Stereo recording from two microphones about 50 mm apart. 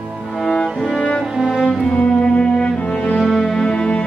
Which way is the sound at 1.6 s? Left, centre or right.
Left.